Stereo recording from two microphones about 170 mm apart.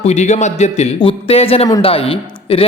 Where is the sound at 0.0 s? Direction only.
40° left (ahead or behind).